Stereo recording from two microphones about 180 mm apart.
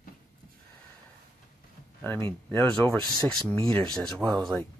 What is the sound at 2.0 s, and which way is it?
Speech, 10° left (ahead or behind).